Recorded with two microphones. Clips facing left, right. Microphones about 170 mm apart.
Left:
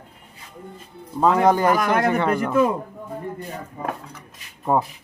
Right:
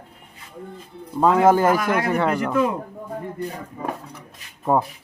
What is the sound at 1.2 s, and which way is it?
A man's voice, centre (ahead or behind).